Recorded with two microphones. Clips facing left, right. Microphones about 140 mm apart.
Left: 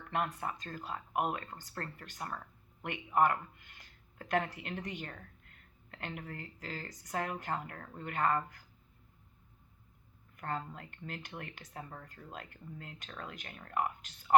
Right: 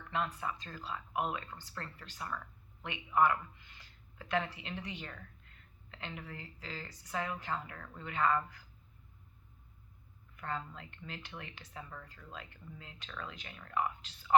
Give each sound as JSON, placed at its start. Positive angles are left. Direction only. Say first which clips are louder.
{"t": 0.1, "sound": "speech", "louder": "left 1 dB", "side_deg": 50}
{"t": 10.3, "sound": "a sound", "louder": "left 1 dB", "side_deg": 45}
{"t": 10.7, "sound": "speech", "louder": "left 2 dB", "side_deg": 50}